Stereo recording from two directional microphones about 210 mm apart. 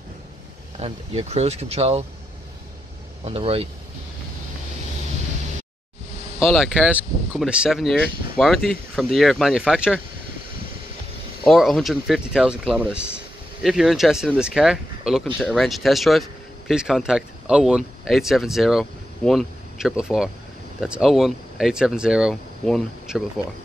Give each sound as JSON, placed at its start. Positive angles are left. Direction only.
{"t": 0.7, "sound": "speech", "side_deg": -30}
{"t": 3.3, "sound": "speech", "side_deg": -30}
{"t": 6.4, "sound": "speech", "side_deg": 0}
{"t": 11.4, "sound": "speech", "side_deg": 0}